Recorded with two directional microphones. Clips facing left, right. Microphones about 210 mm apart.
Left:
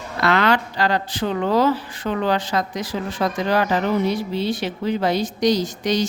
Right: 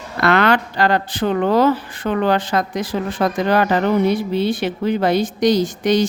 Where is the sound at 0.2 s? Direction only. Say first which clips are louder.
Right 3 dB; 55° right (ahead or behind).